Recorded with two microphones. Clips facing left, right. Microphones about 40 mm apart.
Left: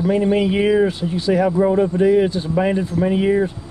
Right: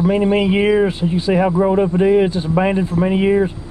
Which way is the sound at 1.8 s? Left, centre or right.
Right.